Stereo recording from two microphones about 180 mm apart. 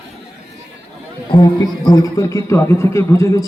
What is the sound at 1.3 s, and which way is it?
A man's voice, 25° left (ahead or behind).